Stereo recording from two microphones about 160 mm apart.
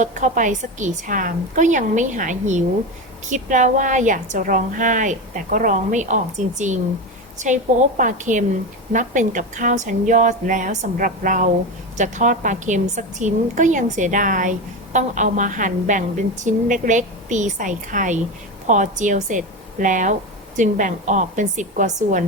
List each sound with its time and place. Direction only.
0.0 s a woman's voice: 50° right (ahead or behind)